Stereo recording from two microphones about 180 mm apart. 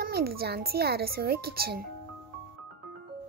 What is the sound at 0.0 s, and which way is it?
Speech, 60° right (ahead or behind).